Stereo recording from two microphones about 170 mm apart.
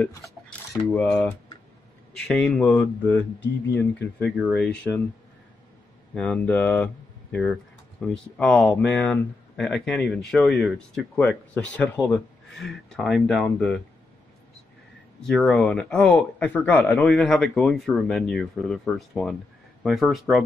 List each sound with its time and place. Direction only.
0.2 s speech: 5° left (ahead or behind)
4.4 s speech: centre (ahead or behind)
6.1 s speech: 10° left (ahead or behind)
8.0 s speech: 5° left (ahead or behind)
15.2 s speech: 5° left (ahead or behind)